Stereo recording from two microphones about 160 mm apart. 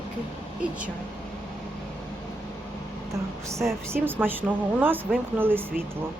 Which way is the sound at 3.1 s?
20° right (ahead or behind).